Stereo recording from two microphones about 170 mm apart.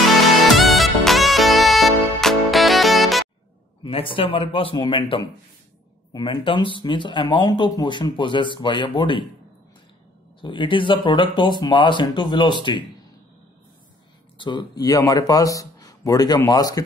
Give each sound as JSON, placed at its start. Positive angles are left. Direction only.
{"t": 0.6, "sound": "music", "side_deg": 0}
{"t": 3.8, "sound": "speech", "side_deg": 30}
{"t": 10.4, "sound": "speech", "side_deg": 30}
{"t": 14.4, "sound": "speech", "side_deg": 25}